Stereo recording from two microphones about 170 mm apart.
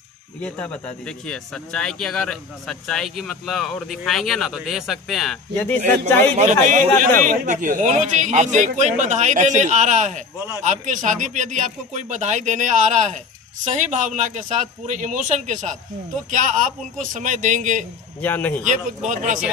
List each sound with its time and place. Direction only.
0.4 s speech: 10° left (ahead or behind)
5.9 s speech: 10° left (ahead or behind)
6.3 s speech: 45° right (ahead or behind)
18.2 s speech: 10° left (ahead or behind)
18.6 s speech: 45° right (ahead or behind)